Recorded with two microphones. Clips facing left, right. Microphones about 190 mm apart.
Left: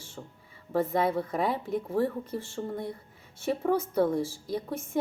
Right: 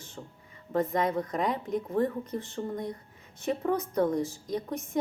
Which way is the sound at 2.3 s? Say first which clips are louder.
Even; 20° right (ahead or behind).